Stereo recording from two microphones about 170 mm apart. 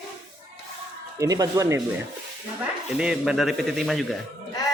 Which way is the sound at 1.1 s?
20° right (ahead or behind).